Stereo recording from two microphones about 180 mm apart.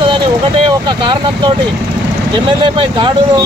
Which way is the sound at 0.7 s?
25° right (ahead or behind).